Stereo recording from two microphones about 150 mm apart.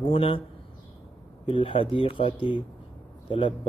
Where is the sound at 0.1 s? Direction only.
40° left (ahead or behind).